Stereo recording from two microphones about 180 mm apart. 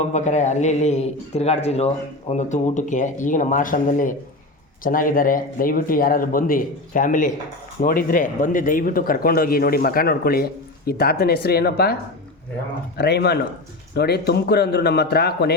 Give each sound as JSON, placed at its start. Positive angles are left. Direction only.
{"t": 0.0, "sound": "a man's voice", "side_deg": 40}
{"t": 13.0, "sound": "a man's voice", "side_deg": 65}